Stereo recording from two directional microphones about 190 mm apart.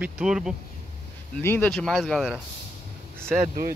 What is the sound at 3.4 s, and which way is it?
Speech, 50° right (ahead or behind).